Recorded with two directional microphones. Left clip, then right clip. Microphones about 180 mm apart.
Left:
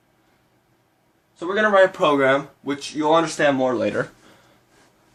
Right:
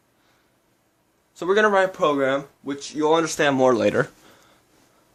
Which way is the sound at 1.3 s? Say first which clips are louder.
Right 2 dB; 35° right (ahead or behind).